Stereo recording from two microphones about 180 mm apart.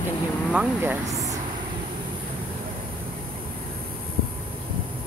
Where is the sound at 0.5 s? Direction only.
10° right (ahead or behind).